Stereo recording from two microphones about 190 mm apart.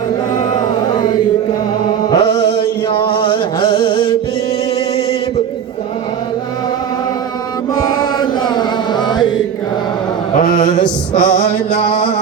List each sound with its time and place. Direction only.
0.9 s chant: 25° left (ahead or behind)
2.0 s music: 20° left (ahead or behind)
7.9 s music: 25° left (ahead or behind)
10.3 s chant: 45° left (ahead or behind)